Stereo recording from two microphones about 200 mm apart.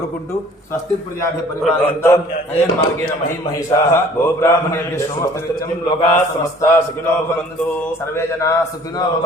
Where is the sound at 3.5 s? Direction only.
15° left (ahead or behind).